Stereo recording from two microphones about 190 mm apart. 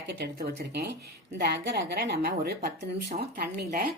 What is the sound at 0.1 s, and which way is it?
A woman's voice, 60° right (ahead or behind).